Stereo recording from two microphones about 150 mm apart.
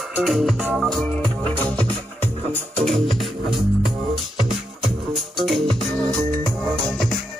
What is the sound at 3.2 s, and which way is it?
Music, centre (ahead or behind).